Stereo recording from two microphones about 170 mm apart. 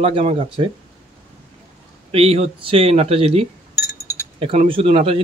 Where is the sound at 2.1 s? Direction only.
35° right (ahead or behind).